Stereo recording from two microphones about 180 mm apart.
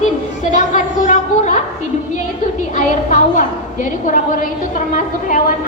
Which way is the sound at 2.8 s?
45° left (ahead or behind).